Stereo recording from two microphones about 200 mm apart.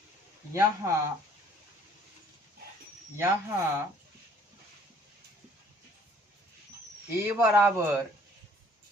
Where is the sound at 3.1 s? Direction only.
15° right (ahead or behind).